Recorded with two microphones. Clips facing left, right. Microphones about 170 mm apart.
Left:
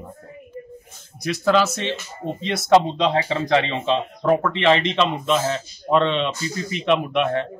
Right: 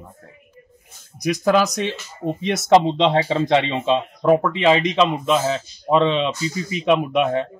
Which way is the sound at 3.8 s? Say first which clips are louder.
Right 2 dB; 15° right (ahead or behind).